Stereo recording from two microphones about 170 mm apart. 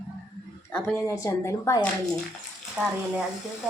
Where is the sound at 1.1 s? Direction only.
15° left (ahead or behind).